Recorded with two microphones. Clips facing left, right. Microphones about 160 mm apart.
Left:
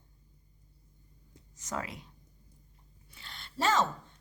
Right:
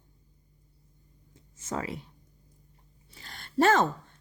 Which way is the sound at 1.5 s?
25° right (ahead or behind).